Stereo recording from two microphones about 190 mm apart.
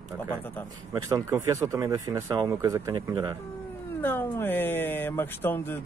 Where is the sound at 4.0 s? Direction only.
10° left (ahead or behind).